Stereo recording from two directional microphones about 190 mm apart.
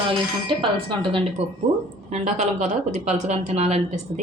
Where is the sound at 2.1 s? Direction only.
40° right (ahead or behind).